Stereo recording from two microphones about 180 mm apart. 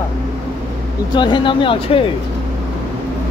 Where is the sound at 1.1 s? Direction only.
25° left (ahead or behind).